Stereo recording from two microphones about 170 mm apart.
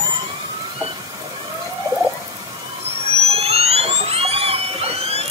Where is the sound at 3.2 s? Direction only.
35° right (ahead or behind).